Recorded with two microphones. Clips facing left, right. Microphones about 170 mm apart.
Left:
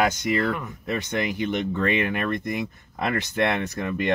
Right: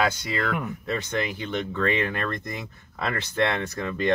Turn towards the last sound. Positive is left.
turn(degrees=15)  # may be behind; listen again after turning